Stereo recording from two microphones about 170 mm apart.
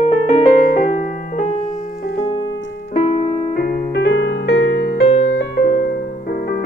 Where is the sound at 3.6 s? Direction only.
70° left (ahead or behind); by 5.0 s 85° left.